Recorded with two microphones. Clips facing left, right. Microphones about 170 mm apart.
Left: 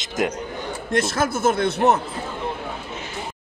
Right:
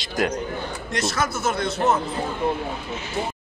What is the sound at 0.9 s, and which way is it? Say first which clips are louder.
A man's voice: left 4 dB; 50° left (ahead or behind).